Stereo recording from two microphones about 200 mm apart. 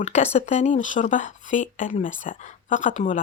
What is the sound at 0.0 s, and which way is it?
Speech, 35° left (ahead or behind).